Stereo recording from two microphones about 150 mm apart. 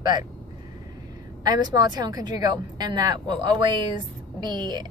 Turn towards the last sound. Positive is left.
turn(degrees=-30)  # may be behind; listen again after turning